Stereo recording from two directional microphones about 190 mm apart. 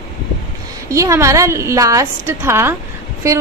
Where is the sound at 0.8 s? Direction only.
15° right (ahead or behind).